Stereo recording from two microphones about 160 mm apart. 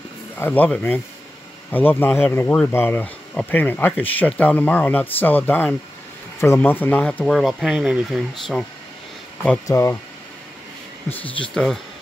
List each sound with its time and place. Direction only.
0.4 s speech: 10° left (ahead or behind)
9.7 s speech: 15° left (ahead or behind)
11.1 s speech: 10° left (ahead or behind)